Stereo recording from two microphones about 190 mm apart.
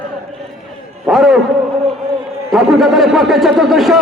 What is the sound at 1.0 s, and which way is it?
Speech, centre (ahead or behind).